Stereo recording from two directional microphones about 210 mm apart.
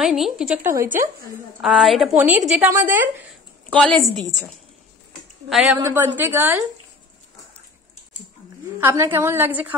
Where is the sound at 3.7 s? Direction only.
5° left (ahead or behind).